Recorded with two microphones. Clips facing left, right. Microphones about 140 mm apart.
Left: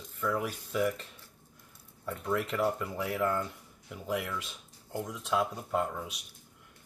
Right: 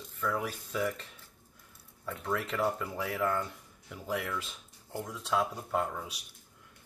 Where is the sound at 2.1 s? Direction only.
10° left (ahead or behind).